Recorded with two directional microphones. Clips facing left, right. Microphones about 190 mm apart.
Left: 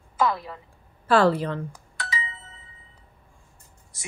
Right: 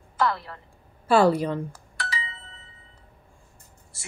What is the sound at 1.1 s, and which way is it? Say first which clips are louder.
Speech: right 1 dB; 10° right (ahead or behind).